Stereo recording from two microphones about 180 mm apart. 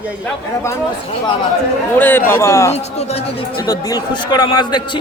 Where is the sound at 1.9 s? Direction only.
10° left (ahead or behind).